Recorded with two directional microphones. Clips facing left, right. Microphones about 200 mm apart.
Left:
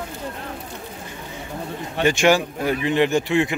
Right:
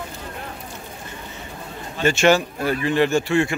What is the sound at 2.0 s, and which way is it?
Speech, 15° left (ahead or behind).